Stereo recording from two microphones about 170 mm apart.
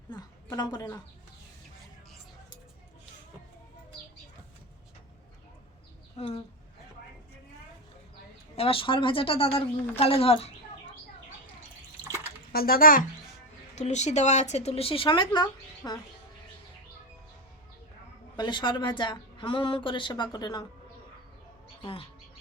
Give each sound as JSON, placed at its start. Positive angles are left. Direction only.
{"t": 0.1, "sound": "a woman's voice", "side_deg": 25}
{"t": 6.1, "sound": "speech", "side_deg": 35}
{"t": 8.5, "sound": "speech", "side_deg": 35}
{"t": 12.5, "sound": "speech", "side_deg": 60}
{"t": 13.7, "sound": "speech", "side_deg": 40}
{"t": 18.3, "sound": "speech", "side_deg": 25}